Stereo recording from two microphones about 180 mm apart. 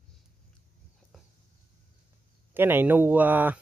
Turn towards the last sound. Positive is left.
turn(degrees=-10)  # may be behind; listen again after turning